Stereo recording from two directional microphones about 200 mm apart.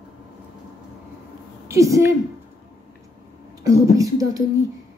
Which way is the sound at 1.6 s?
15° right (ahead or behind).